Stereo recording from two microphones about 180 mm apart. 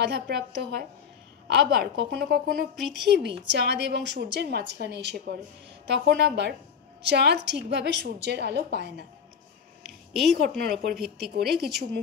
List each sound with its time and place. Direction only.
0.0 s a woman's voice: 65° right (ahead or behind)
3.0 s a woman's voice: 70° right (ahead or behind)
10.1 s a woman's voice: centre (ahead or behind)
10.6 s a woman's voice: 60° right (ahead or behind)